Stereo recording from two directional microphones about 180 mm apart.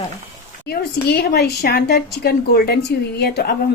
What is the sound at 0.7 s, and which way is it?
A woman's voice, 65° left (ahead or behind).